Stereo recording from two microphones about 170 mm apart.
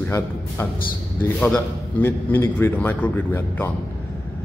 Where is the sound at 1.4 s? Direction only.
10° left (ahead or behind).